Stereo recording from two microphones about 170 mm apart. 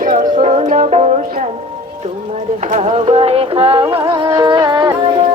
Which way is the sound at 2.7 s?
40° right (ahead or behind).